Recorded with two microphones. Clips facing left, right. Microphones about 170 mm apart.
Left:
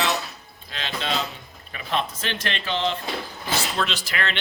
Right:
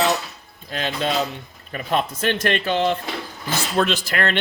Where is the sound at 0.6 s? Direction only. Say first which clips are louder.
Right 5 dB; 45° right (ahead or behind).